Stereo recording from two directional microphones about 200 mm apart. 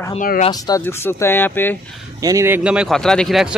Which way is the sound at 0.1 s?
40° left (ahead or behind).